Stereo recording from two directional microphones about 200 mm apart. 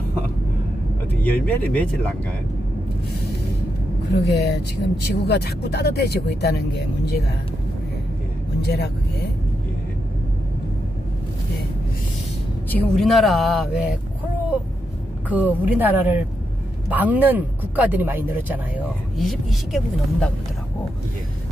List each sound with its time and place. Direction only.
1.3 s speech: 5° left (ahead or behind)
4.1 s speech: 55° left (ahead or behind)
8.5 s speech: 55° left (ahead or behind)
12.7 s speech: 5° left (ahead or behind)
15.2 s speech: 10° right (ahead or behind)